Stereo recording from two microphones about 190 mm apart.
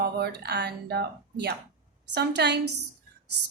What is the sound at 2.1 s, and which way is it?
Speech, 60° right (ahead or behind).